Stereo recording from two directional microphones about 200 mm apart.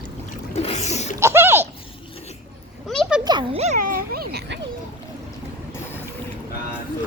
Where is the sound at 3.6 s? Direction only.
40° right (ahead or behind).